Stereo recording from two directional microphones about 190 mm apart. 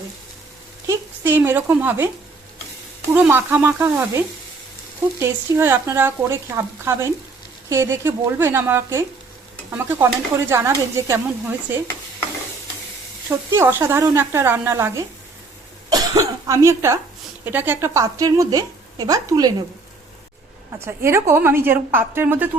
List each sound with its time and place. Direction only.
0.9 s speech: 10° right (ahead or behind)
3.2 s a woman's voice: 10° right (ahead or behind)
5.2 s a woman's voice: 10° right (ahead or behind)
13.5 s a woman's voice: 15° right (ahead or behind)
15.9 s cough: 20° right (ahead or behind)
17.4 s a woman's voice: 10° right (ahead or behind)
20.7 s a woman's voice: 15° right (ahead or behind)